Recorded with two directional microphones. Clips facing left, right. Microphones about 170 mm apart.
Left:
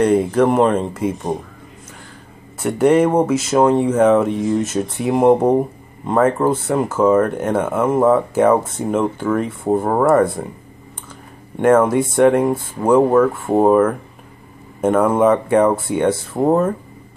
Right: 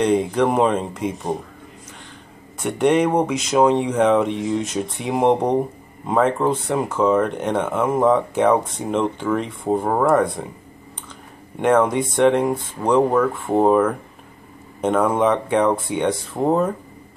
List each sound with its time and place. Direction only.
0.0 s speech: 5° left (ahead or behind)
2.6 s speech: 5° left (ahead or behind)
11.5 s speech: 5° left (ahead or behind)